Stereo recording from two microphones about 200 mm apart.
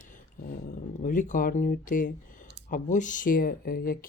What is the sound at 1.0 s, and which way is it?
Speech, 40° left (ahead or behind).